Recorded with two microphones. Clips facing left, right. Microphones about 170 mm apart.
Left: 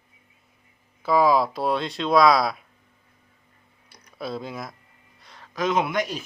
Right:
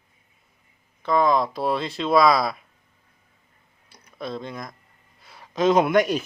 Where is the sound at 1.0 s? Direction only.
5° left (ahead or behind).